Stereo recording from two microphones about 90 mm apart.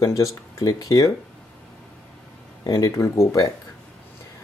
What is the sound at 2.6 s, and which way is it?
Speech, 45° left (ahead or behind).